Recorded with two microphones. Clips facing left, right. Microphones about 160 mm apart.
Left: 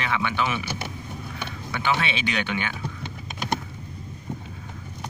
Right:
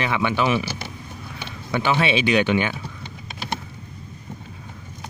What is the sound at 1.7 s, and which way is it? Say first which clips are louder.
Speech: right 6 dB; 15° right (ahead or behind).